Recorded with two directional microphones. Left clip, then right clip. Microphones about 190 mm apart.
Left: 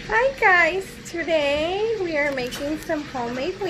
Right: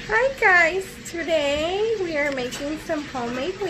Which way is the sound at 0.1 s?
15° right (ahead or behind).